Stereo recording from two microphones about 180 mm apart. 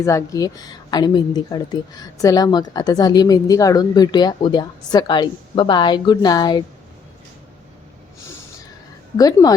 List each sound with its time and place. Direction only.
0.0 s a woman's voice: 15° left (ahead or behind)
9.1 s a woman's voice: 20° left (ahead or behind)